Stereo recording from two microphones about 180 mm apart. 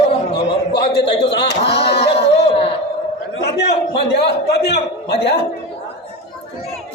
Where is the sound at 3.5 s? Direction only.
65° left (ahead or behind).